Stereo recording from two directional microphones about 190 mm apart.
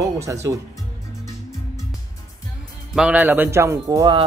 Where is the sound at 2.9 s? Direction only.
5° right (ahead or behind).